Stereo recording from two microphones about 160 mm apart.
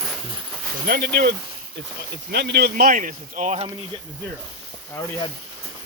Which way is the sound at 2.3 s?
90° right.